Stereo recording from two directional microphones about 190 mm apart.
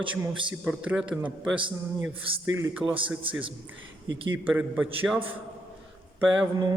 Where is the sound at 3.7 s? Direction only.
90° right.